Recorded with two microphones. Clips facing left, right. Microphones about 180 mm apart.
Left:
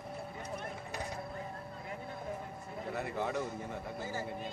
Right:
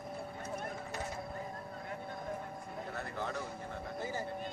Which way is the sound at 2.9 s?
5° left (ahead or behind).